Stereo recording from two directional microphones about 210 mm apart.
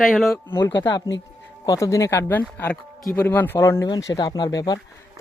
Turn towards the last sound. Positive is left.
turn(degrees=20)  # may be behind; listen again after turning